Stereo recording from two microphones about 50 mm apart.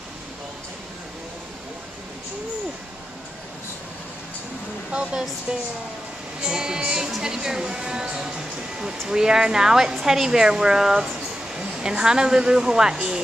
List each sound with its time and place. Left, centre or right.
4.9 s a woman's voice: right